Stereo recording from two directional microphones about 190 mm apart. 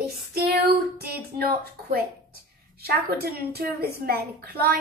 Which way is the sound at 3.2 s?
55° right (ahead or behind).